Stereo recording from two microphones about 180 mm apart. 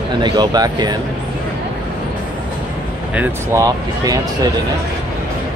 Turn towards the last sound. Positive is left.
turn(degrees=-20)  # may be behind; listen again after turning